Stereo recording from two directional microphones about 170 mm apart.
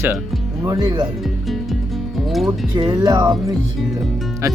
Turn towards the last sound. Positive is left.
turn(degrees=-25)  # may be behind; listen again after turning